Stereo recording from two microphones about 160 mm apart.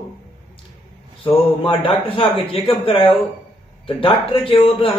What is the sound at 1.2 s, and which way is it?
A man's voice, 30° left (ahead or behind).